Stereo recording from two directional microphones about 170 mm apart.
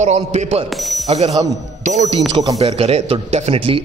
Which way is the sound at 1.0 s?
40° right (ahead or behind).